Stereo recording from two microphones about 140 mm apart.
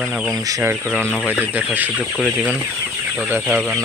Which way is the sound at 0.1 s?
Centre (ahead or behind).